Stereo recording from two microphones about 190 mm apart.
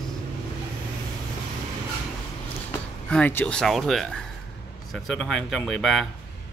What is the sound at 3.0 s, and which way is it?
Speech, 5° left (ahead or behind).